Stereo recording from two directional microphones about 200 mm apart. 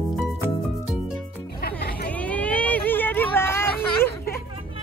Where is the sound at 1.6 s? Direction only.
50° left (ahead or behind).